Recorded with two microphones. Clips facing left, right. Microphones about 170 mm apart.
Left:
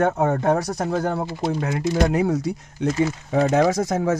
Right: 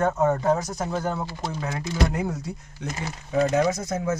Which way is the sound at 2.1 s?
90° left.